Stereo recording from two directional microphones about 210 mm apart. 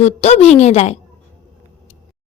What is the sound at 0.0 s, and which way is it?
Speech, 30° left (ahead or behind).